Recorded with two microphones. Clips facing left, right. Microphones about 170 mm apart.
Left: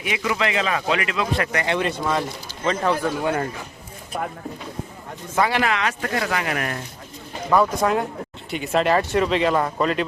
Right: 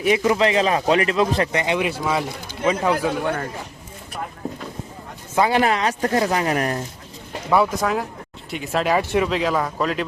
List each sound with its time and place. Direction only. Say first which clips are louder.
0.0 s speech: right 6 dB; 40° right (ahead or behind)
1.4 s speech: right 2 dB; 20° right (ahead or behind)
5.4 s speech: right 3 dB; 25° right (ahead or behind)
7.5 s speech: even; 5° right (ahead or behind)